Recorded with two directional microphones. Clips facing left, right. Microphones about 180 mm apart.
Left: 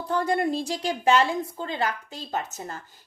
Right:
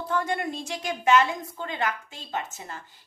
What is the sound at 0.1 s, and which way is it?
A woman's voice, 35° left (ahead or behind).